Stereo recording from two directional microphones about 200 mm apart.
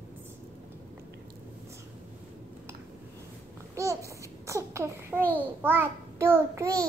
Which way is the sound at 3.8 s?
15° right (ahead or behind).